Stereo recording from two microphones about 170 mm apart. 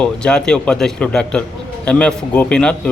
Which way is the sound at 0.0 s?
5° left (ahead or behind).